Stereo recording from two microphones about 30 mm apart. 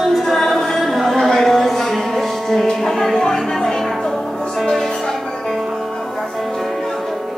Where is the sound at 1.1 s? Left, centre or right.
Centre.